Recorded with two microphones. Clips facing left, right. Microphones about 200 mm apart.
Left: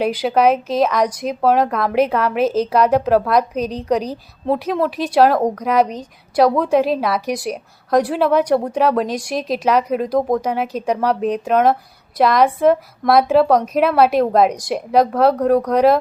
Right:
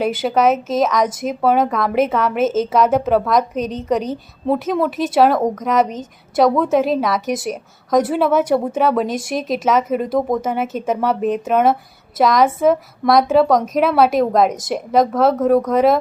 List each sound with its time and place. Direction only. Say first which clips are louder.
0.0 s a woman's voice: left 1 dB; centre (ahead or behind)